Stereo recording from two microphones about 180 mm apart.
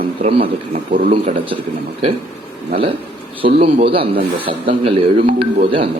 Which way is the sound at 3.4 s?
30° right (ahead or behind).